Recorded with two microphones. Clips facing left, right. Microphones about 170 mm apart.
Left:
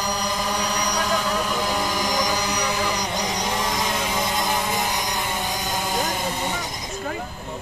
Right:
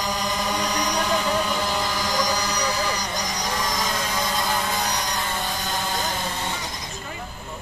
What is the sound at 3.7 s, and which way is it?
Vehicle, 20° left (ahead or behind).